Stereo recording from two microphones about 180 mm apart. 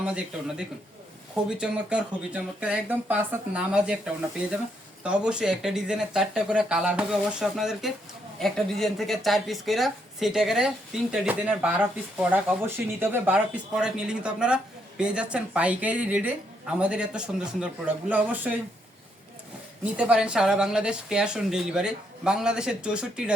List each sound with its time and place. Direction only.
1.5 s a woman's voice: 5° right (ahead or behind)
19.8 s a woman's voice: 5° right (ahead or behind)